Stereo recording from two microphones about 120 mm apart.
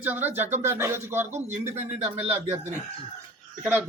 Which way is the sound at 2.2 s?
60° right (ahead or behind).